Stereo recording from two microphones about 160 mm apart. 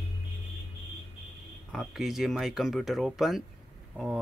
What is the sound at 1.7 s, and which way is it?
Speech, centre (ahead or behind).